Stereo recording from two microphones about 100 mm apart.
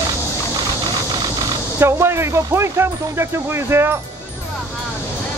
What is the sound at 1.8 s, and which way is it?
Speech, 25° right (ahead or behind).